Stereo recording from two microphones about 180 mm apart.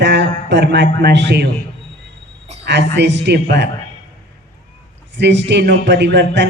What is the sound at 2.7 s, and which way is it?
A man's voice, 75° right (ahead or behind).